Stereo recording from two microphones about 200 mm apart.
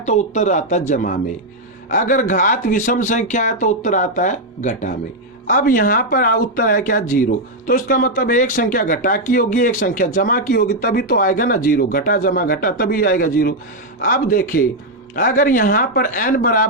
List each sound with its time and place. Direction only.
0.0 s speech: 35° left (ahead or behind)